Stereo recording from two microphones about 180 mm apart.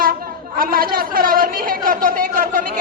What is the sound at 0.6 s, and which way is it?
A man's voice, 55° right (ahead or behind).